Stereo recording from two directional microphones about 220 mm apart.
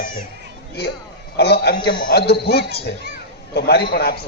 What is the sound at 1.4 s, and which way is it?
A man's voice, 45° left (ahead or behind).